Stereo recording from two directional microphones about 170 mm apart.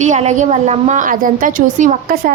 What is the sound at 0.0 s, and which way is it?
A woman's voice, 45° right (ahead or behind).